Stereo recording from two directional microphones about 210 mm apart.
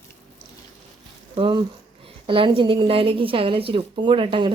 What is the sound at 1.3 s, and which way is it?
A woman's voice, 25° right (ahead or behind).